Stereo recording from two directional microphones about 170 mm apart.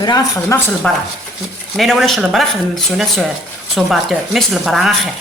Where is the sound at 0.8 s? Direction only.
5° left (ahead or behind).